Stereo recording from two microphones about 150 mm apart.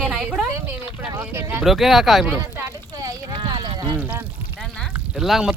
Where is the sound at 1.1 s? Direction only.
15° right (ahead or behind).